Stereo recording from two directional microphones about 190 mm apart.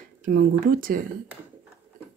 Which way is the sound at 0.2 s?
45° right (ahead or behind).